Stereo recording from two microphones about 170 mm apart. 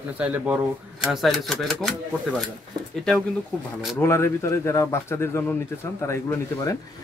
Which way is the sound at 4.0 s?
15° left (ahead or behind).